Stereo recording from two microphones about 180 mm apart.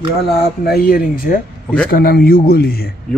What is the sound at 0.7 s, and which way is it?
A man's voice, 55° left (ahead or behind).